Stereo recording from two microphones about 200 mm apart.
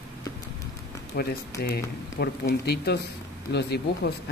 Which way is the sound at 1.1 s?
50° left (ahead or behind).